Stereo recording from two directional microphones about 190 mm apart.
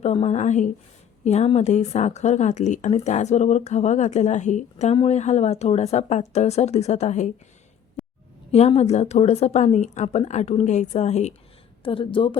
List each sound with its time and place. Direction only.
0.0 s a woman's voice: 35° left (ahead or behind)
8.5 s a woman's voice: 35° left (ahead or behind)